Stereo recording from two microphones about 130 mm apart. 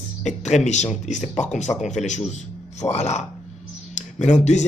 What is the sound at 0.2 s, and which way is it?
A man's voice, 65° left (ahead or behind).